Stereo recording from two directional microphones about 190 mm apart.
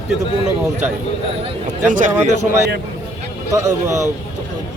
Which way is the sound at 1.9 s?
40° right (ahead or behind).